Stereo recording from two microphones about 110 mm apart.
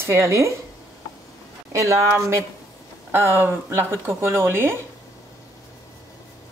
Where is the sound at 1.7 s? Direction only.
25° right (ahead or behind).